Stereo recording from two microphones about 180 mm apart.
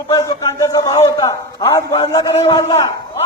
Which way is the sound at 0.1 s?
20° left (ahead or behind).